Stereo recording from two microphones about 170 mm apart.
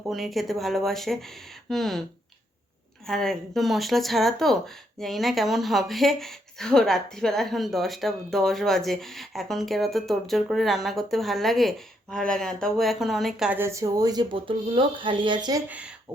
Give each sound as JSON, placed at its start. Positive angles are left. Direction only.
{"t": 0.1, "sound": "speech", "side_deg": 0}
{"t": 3.1, "sound": "a woman's voice", "side_deg": 0}